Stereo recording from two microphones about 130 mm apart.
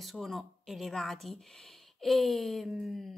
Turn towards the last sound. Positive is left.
turn(degrees=0)  # may be behind; listen again after turning